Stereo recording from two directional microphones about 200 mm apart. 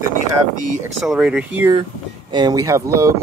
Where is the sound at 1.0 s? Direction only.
5° right (ahead or behind).